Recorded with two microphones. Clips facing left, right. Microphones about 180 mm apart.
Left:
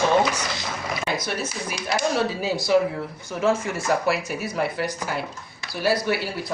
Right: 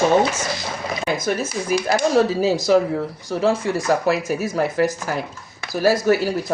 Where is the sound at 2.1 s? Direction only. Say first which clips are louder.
Right 7 dB; 40° right (ahead or behind).